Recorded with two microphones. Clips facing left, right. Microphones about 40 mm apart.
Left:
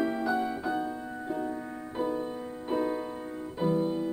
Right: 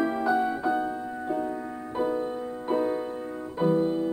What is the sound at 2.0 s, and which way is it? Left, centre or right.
Music, centre.